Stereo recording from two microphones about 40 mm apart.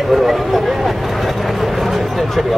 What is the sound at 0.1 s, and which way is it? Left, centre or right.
Speech, centre.